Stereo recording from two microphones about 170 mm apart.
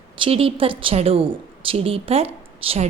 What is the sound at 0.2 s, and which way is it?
A woman's voice, 35° right (ahead or behind).